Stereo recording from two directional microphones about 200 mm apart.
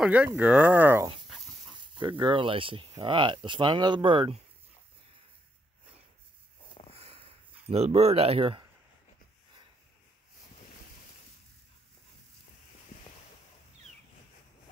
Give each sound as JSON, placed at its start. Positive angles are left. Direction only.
{"t": 0.0, "sound": "speech", "side_deg": -5}
{"t": 2.0, "sound": "speech", "side_deg": -25}
{"t": 6.9, "sound": "a sound", "side_deg": -30}